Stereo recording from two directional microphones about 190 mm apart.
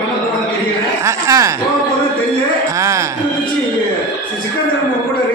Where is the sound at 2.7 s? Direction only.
15° right (ahead or behind).